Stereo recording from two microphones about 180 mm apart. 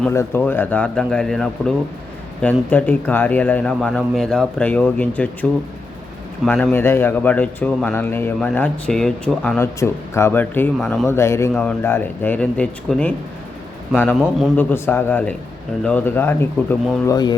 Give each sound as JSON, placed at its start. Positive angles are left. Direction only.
{"t": 0.1, "sound": "speech", "side_deg": 15}
{"t": 11.0, "sound": "speech", "side_deg": 15}